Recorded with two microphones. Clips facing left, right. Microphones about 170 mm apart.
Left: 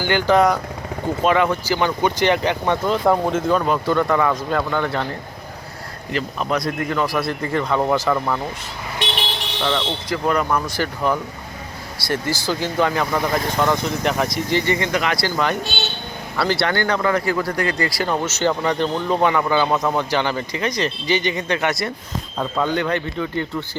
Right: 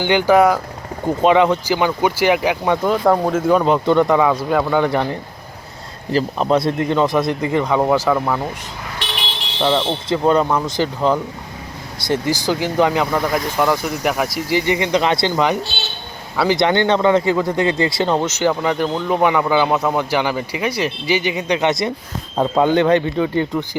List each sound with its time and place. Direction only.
0.0 s a man's voice: 20° right (ahead or behind)
0.3 s speech: 5° right (ahead or behind)
1.2 s a man's voice: 20° right (ahead or behind); by 3.5 s centre (ahead or behind)
3.5 s a man's voice: 20° right (ahead or behind)
6.1 s a man's voice: 35° right (ahead or behind); by 8.4 s 10° right (ahead or behind)
9.6 s a man's voice: 25° right (ahead or behind)